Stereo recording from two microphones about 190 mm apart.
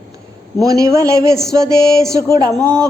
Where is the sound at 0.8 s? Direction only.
15° right (ahead or behind).